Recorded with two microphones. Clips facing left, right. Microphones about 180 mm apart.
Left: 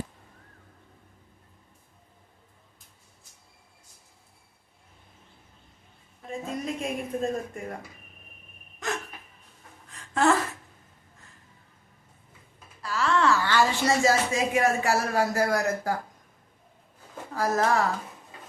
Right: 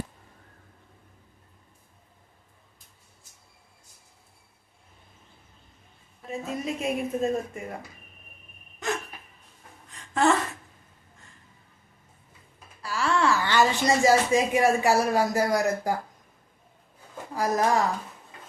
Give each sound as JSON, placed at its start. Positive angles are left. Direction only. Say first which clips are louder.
{"t": 6.7, "sound": "a woman's voice", "louder": "right 5 dB", "side_deg": -5}
{"t": 8.8, "sound": "hiccup", "louder": "right 2 dB", "side_deg": 0}
{"t": 9.9, "sound": "gasp", "louder": "even", "side_deg": 0}
{"t": 12.8, "sound": "speech", "louder": "even", "side_deg": -10}
{"t": 17.3, "sound": "speech", "louder": "right 1 dB", "side_deg": -15}